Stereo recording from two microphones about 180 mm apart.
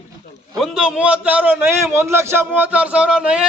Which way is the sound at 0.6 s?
5° right (ahead or behind).